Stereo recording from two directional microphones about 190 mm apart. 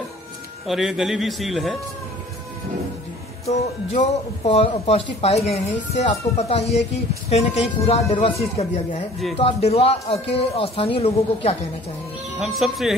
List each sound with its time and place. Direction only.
0.7 s a man's voice: centre (ahead or behind)
4.0 s speech: 40° left (ahead or behind)
12.4 s a man's voice: centre (ahead or behind)